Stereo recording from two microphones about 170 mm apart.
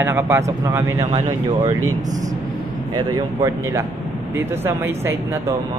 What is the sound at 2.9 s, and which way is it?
Speech, 20° right (ahead or behind).